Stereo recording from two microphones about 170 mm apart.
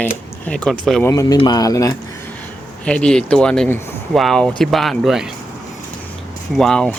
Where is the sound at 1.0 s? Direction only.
20° left (ahead or behind).